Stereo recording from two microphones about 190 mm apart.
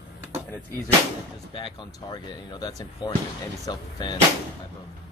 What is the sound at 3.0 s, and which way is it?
Speech, 20° left (ahead or behind).